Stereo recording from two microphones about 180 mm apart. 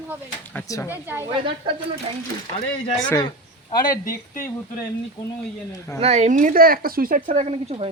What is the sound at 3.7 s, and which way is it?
Speech, 50° left (ahead or behind).